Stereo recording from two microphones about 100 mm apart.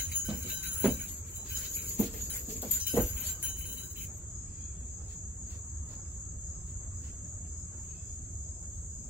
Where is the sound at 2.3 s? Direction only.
15° right (ahead or behind).